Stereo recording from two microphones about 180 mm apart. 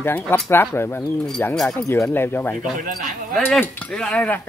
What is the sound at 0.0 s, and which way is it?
Speech, 10° left (ahead or behind).